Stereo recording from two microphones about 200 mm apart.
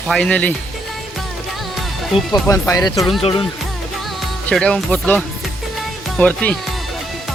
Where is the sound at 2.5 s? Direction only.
15° left (ahead or behind).